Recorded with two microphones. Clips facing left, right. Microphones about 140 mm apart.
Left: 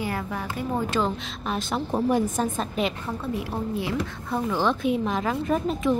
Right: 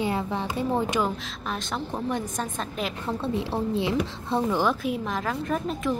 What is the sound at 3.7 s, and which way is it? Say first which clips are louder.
Speech: right 2 dB; 20° right (ahead or behind).